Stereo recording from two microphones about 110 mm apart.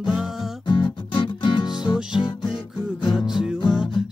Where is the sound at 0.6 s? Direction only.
45° left (ahead or behind).